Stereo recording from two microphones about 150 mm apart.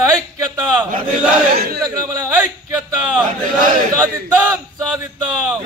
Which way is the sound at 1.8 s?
25° right (ahead or behind).